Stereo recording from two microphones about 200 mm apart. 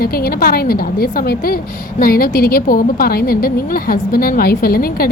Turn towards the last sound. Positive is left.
turn(degrees=50)  # may be behind; listen again after turning